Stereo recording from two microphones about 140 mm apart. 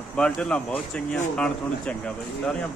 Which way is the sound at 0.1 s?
5° left (ahead or behind).